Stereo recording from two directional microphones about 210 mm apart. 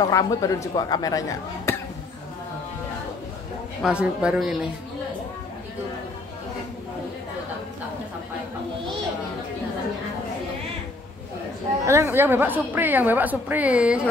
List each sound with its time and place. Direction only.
0.0 s speech: 15° left (ahead or behind)
1.7 s a sound: 15° left (ahead or behind)
3.8 s speech: 5° right (ahead or behind)
11.8 s a woman's voice: 15° right (ahead or behind)